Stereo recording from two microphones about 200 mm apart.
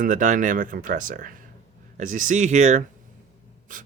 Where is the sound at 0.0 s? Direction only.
40° right (ahead or behind).